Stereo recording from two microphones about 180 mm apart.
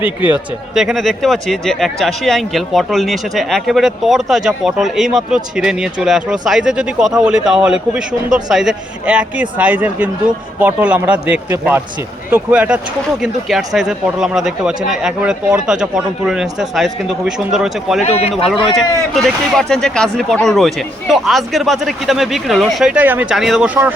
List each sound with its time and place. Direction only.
0.0 s speech: 10° right (ahead or behind)
18.0 s speech: 35° left (ahead or behind)
19.1 s speech: centre (ahead or behind)